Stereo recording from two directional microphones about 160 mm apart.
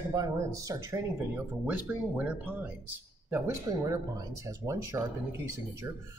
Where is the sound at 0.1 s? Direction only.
25° right (ahead or behind).